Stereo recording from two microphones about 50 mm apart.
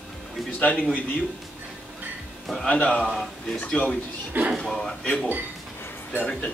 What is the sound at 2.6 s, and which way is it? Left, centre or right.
A man's voice, left.